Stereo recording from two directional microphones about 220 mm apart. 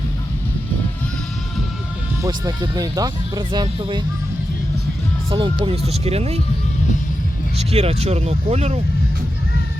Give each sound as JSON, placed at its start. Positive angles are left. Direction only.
{"t": 2.2, "sound": "speech", "side_deg": -15}
{"t": 5.3, "sound": "speech", "side_deg": -25}
{"t": 7.6, "sound": "speech", "side_deg": -25}